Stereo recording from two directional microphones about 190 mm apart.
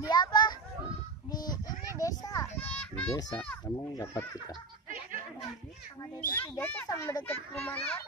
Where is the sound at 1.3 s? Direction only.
20° left (ahead or behind).